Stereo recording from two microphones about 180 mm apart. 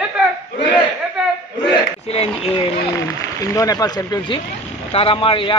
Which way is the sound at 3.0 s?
20° left (ahead or behind).